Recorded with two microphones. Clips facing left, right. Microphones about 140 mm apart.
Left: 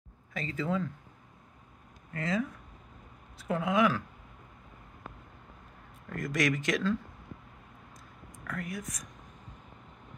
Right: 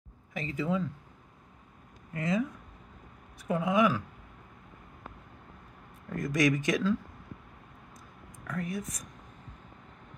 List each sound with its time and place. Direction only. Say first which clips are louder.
0.3 s speech: right 1 dB; 20° right (ahead or behind)
2.1 s speech: right 2 dB; 20° right (ahead or behind)
6.1 s speech: right 3 dB; 15° right (ahead or behind)
8.5 s speech: right 3 dB; 25° right (ahead or behind)